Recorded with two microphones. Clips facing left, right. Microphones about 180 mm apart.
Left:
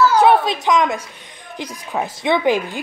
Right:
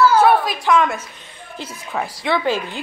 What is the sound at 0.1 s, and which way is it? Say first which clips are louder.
A woman's voice: left 1 dB; 20° left (ahead or behind).